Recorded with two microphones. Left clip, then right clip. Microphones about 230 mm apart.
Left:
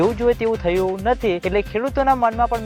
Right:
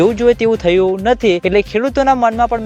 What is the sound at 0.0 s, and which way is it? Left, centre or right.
Speech, right.